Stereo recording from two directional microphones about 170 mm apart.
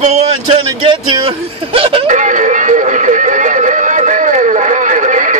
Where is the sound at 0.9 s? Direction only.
35° right (ahead or behind).